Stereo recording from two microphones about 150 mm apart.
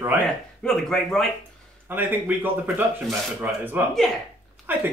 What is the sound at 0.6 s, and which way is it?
Speech, centre (ahead or behind).